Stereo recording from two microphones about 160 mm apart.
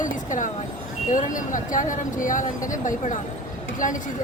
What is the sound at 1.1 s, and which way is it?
Speech, 55° left (ahead or behind).